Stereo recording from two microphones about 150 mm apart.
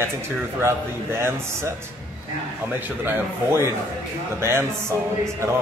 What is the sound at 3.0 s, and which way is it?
A man's voice, 15° right (ahead or behind).